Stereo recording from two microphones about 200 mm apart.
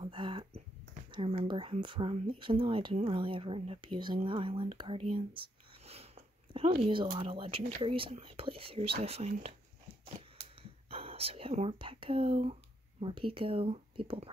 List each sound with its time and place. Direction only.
0.0 s speech: 25° right (ahead or behind)
10.9 s speech: 30° right (ahead or behind)